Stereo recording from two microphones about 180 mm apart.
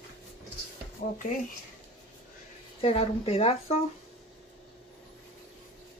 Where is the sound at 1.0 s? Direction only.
45° left (ahead or behind).